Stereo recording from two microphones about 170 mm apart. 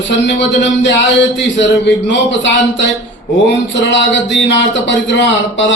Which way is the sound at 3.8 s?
90° left.